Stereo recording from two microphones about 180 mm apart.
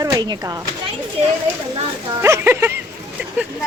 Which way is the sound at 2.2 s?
15° right (ahead or behind).